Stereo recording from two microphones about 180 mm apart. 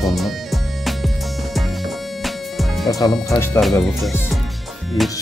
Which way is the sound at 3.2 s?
15° left (ahead or behind).